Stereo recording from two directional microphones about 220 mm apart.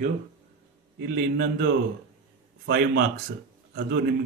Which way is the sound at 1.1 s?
45° right (ahead or behind).